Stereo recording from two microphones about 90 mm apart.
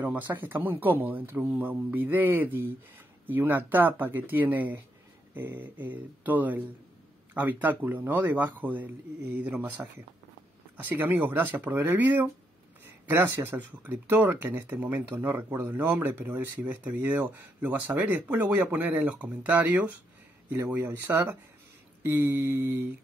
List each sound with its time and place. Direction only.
0.0 s speech: 20° right (ahead or behind)
10.8 s speech: 20° right (ahead or behind)
22.0 s a sound: 30° right (ahead or behind)